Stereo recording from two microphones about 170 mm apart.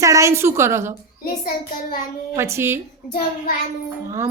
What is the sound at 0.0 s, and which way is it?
Speech, 20° right (ahead or behind).